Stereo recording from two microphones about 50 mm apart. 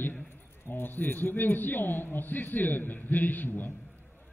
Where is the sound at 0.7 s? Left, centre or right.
Left.